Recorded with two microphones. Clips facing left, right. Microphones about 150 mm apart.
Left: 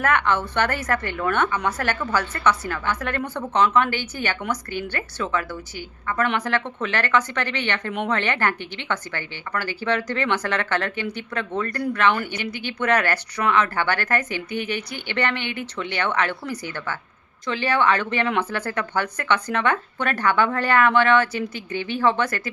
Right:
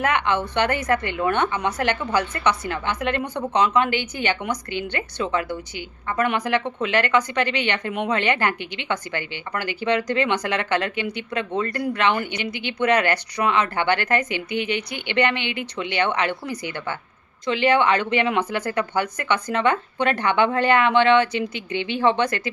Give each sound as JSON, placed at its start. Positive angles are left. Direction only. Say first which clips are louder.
{"t": 0.0, "sound": "speech", "louder": "even", "side_deg": -15}